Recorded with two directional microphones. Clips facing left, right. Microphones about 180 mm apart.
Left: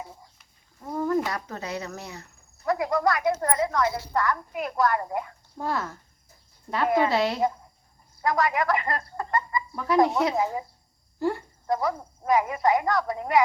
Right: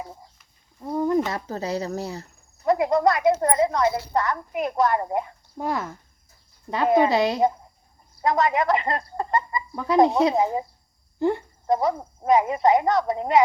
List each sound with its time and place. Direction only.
0.8 s speech: 15° right (ahead or behind)
1.3 s speech: 30° right (ahead or behind)